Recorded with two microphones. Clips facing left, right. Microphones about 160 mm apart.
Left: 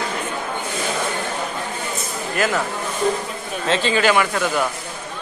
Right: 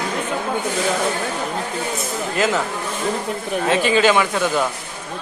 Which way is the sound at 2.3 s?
20° right (ahead or behind).